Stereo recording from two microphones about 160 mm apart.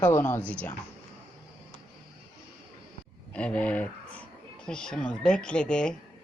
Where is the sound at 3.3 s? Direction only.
10° left (ahead or behind).